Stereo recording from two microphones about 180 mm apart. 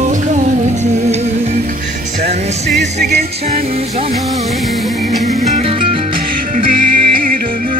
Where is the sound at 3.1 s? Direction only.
35° right (ahead or behind).